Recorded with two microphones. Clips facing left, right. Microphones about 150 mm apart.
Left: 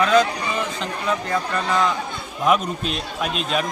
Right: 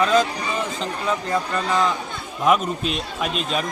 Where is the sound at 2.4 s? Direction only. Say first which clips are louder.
Right 1 dB; centre (ahead or behind).